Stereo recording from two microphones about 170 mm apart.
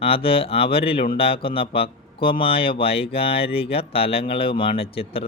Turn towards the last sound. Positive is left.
turn(degrees=35)  # may be behind; listen again after turning